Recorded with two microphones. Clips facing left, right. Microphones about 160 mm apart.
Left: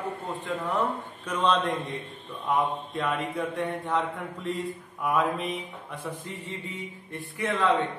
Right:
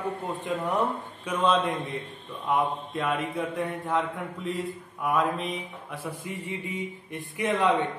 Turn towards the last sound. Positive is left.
turn(degrees=-15)  # may be behind; listen again after turning